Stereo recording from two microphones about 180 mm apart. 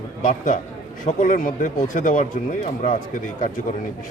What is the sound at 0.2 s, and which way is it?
Speech, 45° left (ahead or behind).